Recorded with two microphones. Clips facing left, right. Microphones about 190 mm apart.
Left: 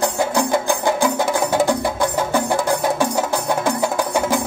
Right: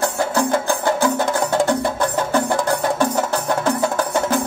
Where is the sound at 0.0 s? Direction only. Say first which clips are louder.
Even; 15° left (ahead or behind).